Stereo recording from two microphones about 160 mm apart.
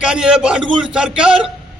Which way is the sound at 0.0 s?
5° right (ahead or behind).